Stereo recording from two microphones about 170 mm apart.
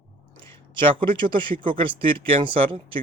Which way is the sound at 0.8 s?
30° right (ahead or behind).